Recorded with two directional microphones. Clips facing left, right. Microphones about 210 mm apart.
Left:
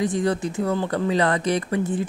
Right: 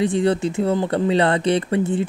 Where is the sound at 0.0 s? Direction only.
25° right (ahead or behind).